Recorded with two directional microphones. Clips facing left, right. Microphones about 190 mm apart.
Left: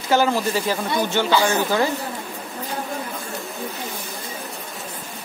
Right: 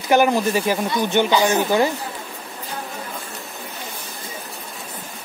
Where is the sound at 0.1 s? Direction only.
15° right (ahead or behind).